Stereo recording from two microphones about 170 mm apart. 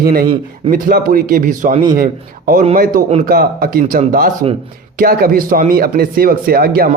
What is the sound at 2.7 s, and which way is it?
A man's voice, 55° right (ahead or behind).